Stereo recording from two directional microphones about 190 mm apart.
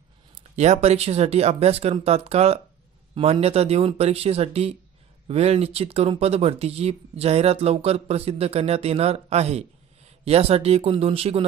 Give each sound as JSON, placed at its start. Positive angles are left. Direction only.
{"t": 0.6, "sound": "speech", "side_deg": -35}